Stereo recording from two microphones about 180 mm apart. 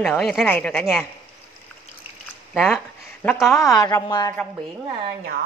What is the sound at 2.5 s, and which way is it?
Speech, 5° left (ahead or behind).